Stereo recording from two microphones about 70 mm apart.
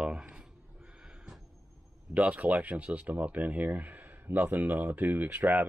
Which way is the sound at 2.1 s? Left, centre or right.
Right.